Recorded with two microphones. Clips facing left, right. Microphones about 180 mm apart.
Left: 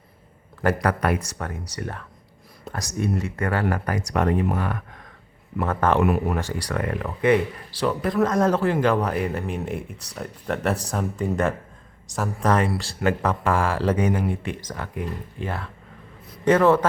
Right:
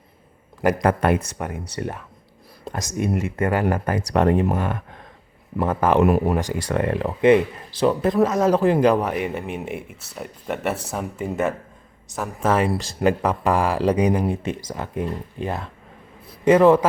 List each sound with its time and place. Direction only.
0.6 s speech: 20° right (ahead or behind)
2.7 s speech: 20° right (ahead or behind)
6.1 s speech: 35° right (ahead or behind)
6.3 s speech: 15° right (ahead or behind)
8.2 s speech: 5° right (ahead or behind)
12.6 s speech: 20° right (ahead or behind)